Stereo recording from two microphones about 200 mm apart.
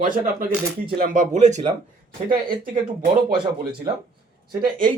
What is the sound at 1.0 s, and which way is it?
Speech, 40° right (ahead or behind).